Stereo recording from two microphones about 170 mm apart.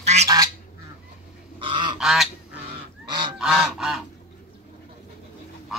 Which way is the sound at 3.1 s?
25° right (ahead or behind).